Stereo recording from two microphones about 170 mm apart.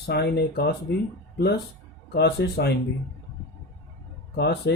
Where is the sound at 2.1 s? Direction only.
70° left (ahead or behind).